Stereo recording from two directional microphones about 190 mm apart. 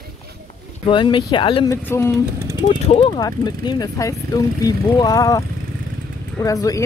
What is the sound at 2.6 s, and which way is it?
Speech, 25° left (ahead or behind).